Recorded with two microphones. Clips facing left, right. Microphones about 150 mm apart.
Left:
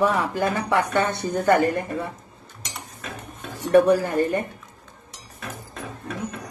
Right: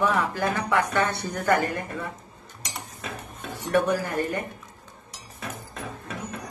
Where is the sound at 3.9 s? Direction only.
30° left (ahead or behind).